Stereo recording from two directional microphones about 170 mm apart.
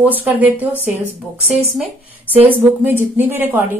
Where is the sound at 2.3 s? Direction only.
10° right (ahead or behind).